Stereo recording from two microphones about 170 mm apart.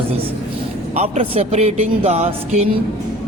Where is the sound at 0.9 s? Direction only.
40° right (ahead or behind).